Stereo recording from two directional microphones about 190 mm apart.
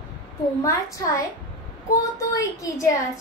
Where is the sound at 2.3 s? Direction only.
15° left (ahead or behind).